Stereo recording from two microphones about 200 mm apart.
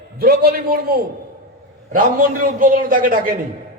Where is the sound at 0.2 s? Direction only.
50° right (ahead or behind).